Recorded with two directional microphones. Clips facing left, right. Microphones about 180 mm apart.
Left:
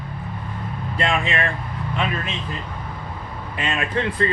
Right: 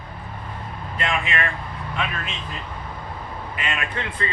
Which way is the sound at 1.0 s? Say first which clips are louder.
Left 3 dB; 30° left (ahead or behind).